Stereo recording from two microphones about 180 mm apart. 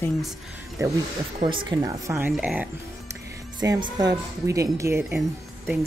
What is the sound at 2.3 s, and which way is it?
Speech, 5° right (ahead or behind).